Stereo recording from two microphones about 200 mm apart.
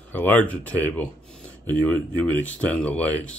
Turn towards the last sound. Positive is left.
turn(degrees=5)  # may be behind; listen again after turning